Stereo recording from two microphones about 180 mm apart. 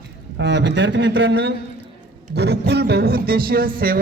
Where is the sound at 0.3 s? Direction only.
75° right (ahead or behind).